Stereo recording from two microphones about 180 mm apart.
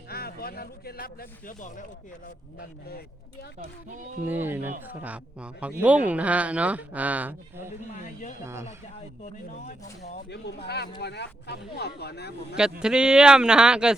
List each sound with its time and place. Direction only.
0.1 s speech: 60° left (ahead or behind)
3.6 s speech: 45° right (ahead or behind)
4.3 s speech: 10° right (ahead or behind)
10.0 s speech: 70° left (ahead or behind)
12.8 s speech: 5° right (ahead or behind)